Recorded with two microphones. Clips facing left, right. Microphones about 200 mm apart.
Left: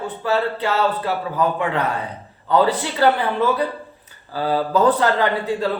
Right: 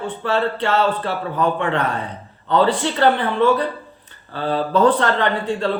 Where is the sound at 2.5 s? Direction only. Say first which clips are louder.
Right 1 dB; 10° left (ahead or behind).